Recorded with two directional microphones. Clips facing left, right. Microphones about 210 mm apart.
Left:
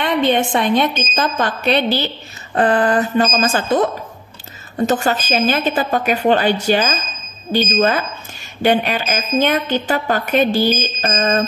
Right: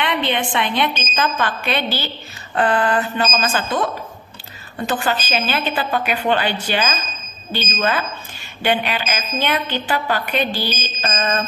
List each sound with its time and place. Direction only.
0.0 s a woman's voice: 45° left (ahead or behind)